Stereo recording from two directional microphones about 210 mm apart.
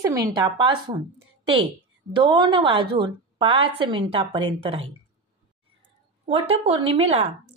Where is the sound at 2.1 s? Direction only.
20° right (ahead or behind).